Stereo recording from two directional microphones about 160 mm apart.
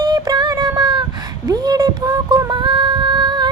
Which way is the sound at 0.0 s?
25° right (ahead or behind).